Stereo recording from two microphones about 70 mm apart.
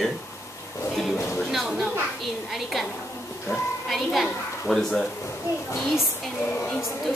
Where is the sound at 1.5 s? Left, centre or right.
Centre.